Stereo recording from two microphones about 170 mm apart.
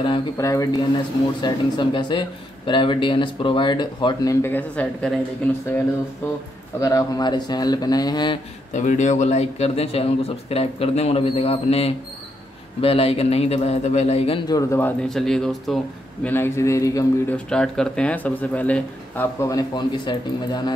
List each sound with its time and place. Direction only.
0.0 s speech: 25° left (ahead or behind); by 5.1 s 10° left (ahead or behind)
6.2 s speech: 15° left (ahead or behind)
8.7 s a man's voice: 45° left (ahead or behind)
14.5 s speech: 15° left (ahead or behind)
15.0 s speech: centre (ahead or behind)
16.3 s speech: 15° left (ahead or behind)
17.5 s speech: 5° left (ahead or behind); by 20.7 s 25° left (ahead or behind)